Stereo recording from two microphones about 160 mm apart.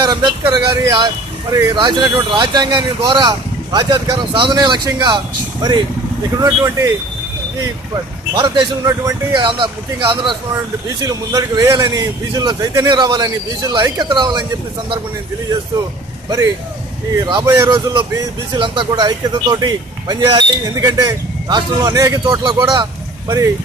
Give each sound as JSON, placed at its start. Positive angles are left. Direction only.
{"t": 0.0, "sound": "speech", "side_deg": -25}
{"t": 7.9, "sound": "speech", "side_deg": -25}
{"t": 11.1, "sound": "speech", "side_deg": -20}
{"t": 17.2, "sound": "speech", "side_deg": -25}
{"t": 23.2, "sound": "speech", "side_deg": -20}